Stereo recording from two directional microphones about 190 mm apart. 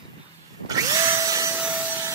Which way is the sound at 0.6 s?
20° right (ahead or behind).